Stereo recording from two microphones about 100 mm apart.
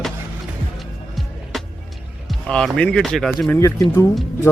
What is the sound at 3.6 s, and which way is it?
Speech, 30° left (ahead or behind).